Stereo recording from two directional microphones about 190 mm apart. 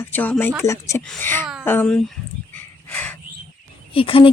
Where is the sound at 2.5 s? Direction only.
10° left (ahead or behind).